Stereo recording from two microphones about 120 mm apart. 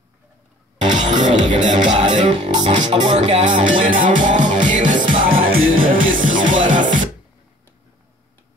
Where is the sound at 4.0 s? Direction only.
90° right.